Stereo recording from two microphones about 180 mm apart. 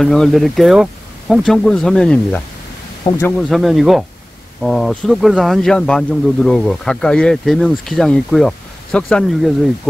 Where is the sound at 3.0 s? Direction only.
20° left (ahead or behind).